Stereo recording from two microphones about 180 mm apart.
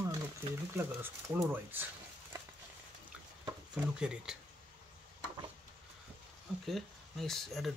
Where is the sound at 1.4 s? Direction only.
10° right (ahead or behind).